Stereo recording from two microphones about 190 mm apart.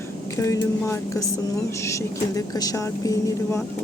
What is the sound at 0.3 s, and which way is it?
Speech, 15° left (ahead or behind).